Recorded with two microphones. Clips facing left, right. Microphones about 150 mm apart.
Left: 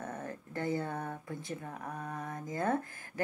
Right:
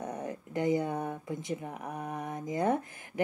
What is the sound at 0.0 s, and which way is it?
Speech, 15° right (ahead or behind).